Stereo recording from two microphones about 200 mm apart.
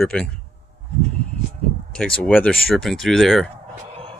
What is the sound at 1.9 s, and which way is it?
Speech, 5° left (ahead or behind).